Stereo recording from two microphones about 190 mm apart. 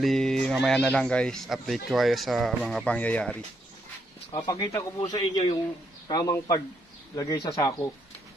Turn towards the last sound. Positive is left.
turn(degrees=20)  # may be behind; listen again after turning